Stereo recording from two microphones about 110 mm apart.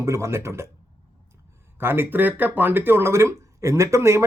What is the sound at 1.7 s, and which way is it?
Speech, 20° right (ahead or behind).